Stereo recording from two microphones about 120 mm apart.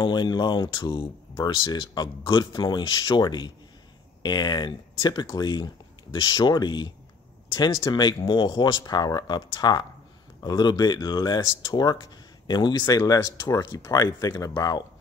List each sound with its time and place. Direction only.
0.0 s speech: 35° left (ahead or behind)